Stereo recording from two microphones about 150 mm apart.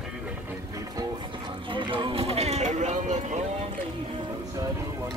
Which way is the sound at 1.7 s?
35° right (ahead or behind).